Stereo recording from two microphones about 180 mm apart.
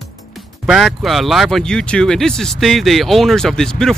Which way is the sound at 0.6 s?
Centre (ahead or behind).